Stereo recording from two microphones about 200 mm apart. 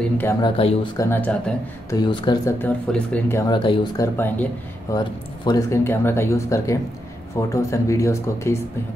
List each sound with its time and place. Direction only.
0.0 s speech: 10° left (ahead or behind)
0.4 s speech: 30° left (ahead or behind)
0.9 s speech: 10° left (ahead or behind)